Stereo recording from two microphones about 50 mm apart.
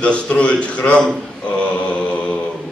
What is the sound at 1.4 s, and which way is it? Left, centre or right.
Mantra, left.